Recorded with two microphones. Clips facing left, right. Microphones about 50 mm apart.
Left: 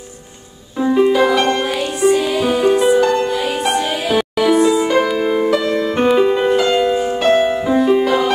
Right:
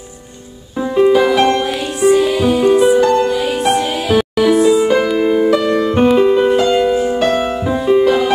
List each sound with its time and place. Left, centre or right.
0.7 s music: centre
7.2 s music: left
7.6 s music: centre